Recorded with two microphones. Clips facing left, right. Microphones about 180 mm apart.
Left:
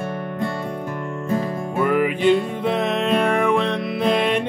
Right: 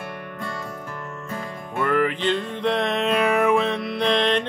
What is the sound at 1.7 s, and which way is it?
Music, 10° left (ahead or behind).